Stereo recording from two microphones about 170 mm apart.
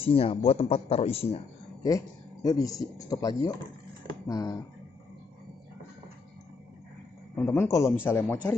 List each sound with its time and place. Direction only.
0.0 s a man's voice: 30° left (ahead or behind)
1.8 s speech: 20° left (ahead or behind)
7.3 s speech: 15° left (ahead or behind)